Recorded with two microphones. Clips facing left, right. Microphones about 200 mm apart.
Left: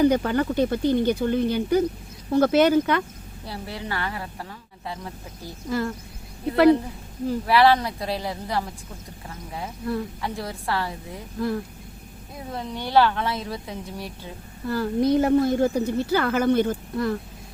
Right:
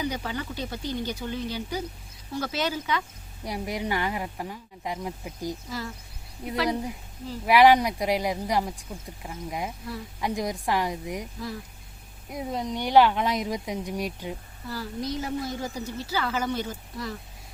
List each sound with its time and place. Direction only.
0.0 s speech: 55° left (ahead or behind)
3.4 s speech: 15° right (ahead or behind)
5.6 s speech: 55° left (ahead or behind)
6.4 s speech: 15° right (ahead or behind)
11.3 s speech: 55° left (ahead or behind)
12.3 s speech: 15° right (ahead or behind)
14.7 s speech: 55° left (ahead or behind)